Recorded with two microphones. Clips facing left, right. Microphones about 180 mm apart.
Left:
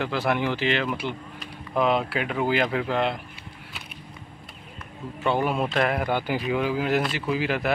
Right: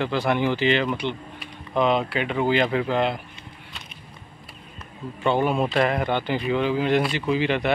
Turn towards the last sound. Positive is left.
turn(degrees=5)  # may be behind; listen again after turning